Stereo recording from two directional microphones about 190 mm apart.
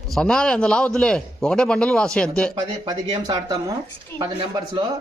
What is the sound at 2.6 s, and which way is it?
Speech, 20° right (ahead or behind).